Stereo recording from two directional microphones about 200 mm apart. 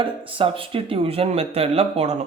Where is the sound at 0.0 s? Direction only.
25° right (ahead or behind).